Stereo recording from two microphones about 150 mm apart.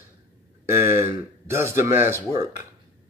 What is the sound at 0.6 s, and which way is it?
Speech, 15° right (ahead or behind).